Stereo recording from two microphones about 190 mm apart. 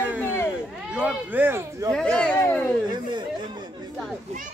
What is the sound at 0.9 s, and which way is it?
Speech, 5° right (ahead or behind).